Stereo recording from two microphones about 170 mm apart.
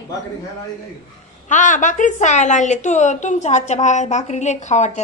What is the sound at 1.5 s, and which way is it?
A woman's voice, 50° left (ahead or behind).